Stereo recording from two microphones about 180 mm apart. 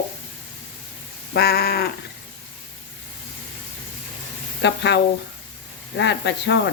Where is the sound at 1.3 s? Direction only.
60° left (ahead or behind).